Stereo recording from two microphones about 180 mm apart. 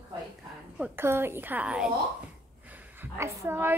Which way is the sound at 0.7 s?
10° right (ahead or behind).